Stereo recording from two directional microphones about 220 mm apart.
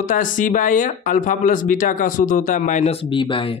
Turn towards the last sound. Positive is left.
turn(degrees=20)  # may be behind; listen again after turning